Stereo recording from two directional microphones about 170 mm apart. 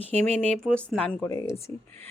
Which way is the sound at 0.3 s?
5° left (ahead or behind).